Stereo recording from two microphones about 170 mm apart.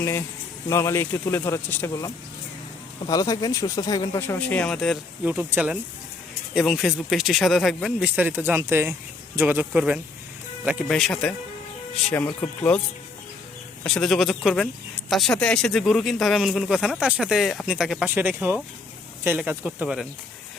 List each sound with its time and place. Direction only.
0.0 s speech: 15° left (ahead or behind)
3.1 s speech: 20° left (ahead or behind)
4.2 s speech: 10° left (ahead or behind)
5.2 s speech: 10° right (ahead or behind); by 12.8 s 10° left (ahead or behind)
13.8 s speech: centre (ahead or behind)